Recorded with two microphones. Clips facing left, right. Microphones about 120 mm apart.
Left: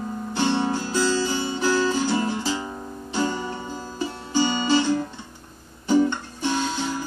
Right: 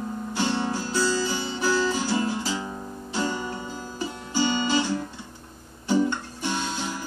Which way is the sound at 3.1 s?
20° left (ahead or behind).